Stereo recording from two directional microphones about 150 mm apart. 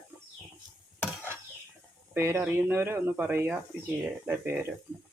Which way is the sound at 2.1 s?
15° right (ahead or behind).